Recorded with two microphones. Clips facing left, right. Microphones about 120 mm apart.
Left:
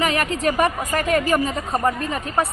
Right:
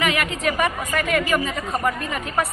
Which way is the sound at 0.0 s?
35° left (ahead or behind).